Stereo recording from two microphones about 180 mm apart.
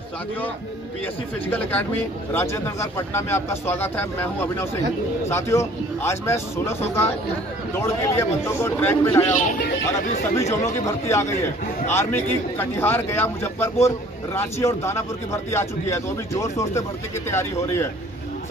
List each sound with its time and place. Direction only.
1.5 s a man's voice: 10° left (ahead or behind)
7.8 s a man's voice: 15° left (ahead or behind)
9.2 s speech: 45° left (ahead or behind)
10.3 s a man's voice: 15° left (ahead or behind)